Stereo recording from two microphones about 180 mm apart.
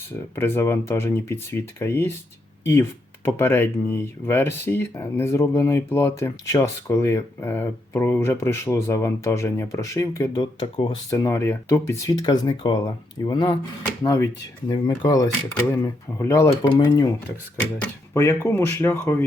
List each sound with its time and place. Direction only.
0.3 s speech: 15° left (ahead or behind)
3.2 s speech: 15° left (ahead or behind)
11.3 s speech: 15° left (ahead or behind)
17.7 s speech: 10° left (ahead or behind)